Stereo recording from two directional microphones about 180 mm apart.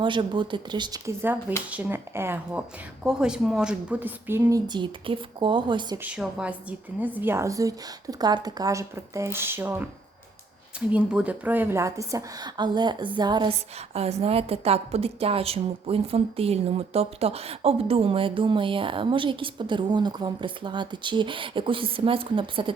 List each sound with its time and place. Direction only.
0.0 s a woman's voice: 25° right (ahead or behind)
6.0 s a woman's voice: 5° right (ahead or behind); by 22.7 s 30° right (ahead or behind)